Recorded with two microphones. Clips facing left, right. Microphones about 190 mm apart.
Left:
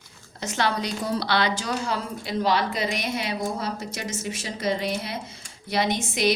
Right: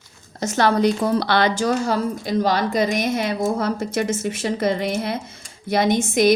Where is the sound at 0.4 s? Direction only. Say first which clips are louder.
Right 9 dB; 45° right (ahead or behind).